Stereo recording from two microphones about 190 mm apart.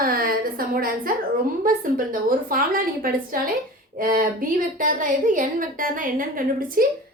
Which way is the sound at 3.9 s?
50° right (ahead or behind).